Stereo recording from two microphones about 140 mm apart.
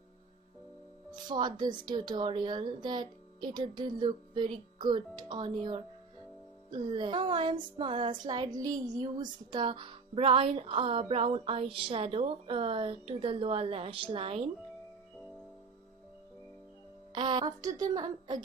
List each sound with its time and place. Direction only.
1.2 s speech: 30° right (ahead or behind)
9.5 s speech: 35° right (ahead or behind)
17.1 s a woman's voice: 35° right (ahead or behind)